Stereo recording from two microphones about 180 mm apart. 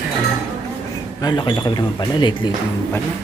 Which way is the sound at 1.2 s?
25° left (ahead or behind).